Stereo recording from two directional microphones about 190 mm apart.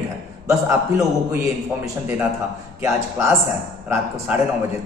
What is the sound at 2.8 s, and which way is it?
A man's voice, 15° right (ahead or behind).